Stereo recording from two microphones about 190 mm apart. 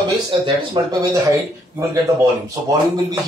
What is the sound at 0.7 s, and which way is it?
A man's voice, 20° right (ahead or behind).